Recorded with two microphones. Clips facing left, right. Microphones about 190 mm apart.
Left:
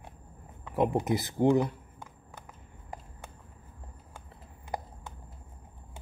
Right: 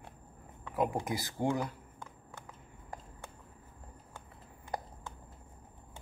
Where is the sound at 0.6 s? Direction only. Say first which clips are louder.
Left 5 dB; 20° left (ahead or behind).